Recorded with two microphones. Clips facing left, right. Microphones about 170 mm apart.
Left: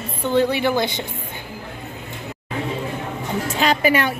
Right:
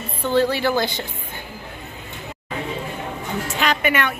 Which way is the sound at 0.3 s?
20° left (ahead or behind).